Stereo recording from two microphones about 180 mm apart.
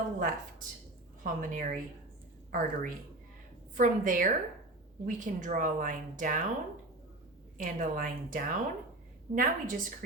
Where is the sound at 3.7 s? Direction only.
45° right (ahead or behind).